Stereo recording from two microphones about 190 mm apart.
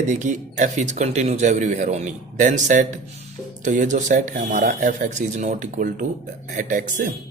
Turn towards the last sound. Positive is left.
turn(degrees=-40)  # may be behind; listen again after turning